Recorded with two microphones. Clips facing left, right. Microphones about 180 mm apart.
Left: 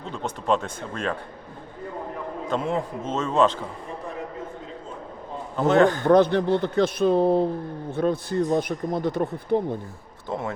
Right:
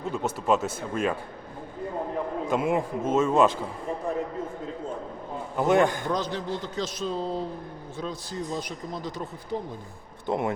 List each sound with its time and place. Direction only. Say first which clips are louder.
0.0 s speech: right 2 dB; 5° right (ahead or behind)
2.5 s speech: even; 10° right (ahead or behind)
5.5 s speech: left 3 dB; 10° right (ahead or behind)
6.0 s speech: left 11 dB; 60° left (ahead or behind)
10.2 s speech: right 3 dB; 15° right (ahead or behind)